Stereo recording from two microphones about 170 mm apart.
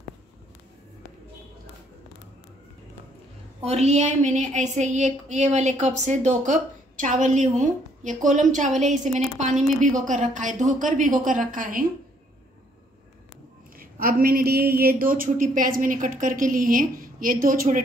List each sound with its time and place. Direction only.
3.6 s a woman's voice: 40° right (ahead or behind)
13.7 s a woman's voice: 60° right (ahead or behind)